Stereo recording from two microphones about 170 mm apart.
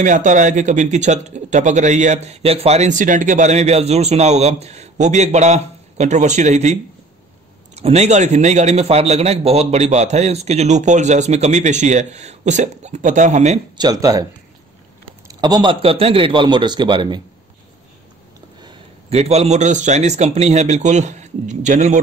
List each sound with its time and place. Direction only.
0.0 s speech: 45° right (ahead or behind)
13.7 s a man's voice: 20° right (ahead or behind)
15.2 s a man's voice: 25° right (ahead or behind)
18.6 s a man's voice: 30° right (ahead or behind)